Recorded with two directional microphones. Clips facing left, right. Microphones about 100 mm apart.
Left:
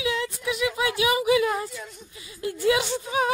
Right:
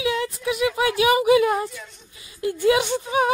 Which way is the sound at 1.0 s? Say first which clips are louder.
Right 5 dB; 30° right (ahead or behind).